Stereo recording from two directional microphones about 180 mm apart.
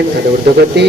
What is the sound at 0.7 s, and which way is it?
Speech, 70° right (ahead or behind).